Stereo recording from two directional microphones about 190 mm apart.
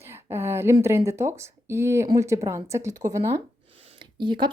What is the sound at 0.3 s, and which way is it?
Speech, 15° right (ahead or behind).